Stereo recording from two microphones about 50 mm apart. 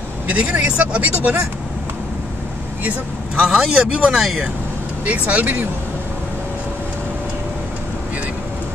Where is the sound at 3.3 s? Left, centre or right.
Centre.